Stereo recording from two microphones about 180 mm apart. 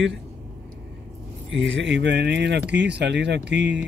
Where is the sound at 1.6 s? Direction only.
90° right.